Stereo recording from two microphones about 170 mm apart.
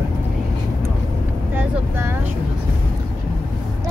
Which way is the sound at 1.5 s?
10° right (ahead or behind).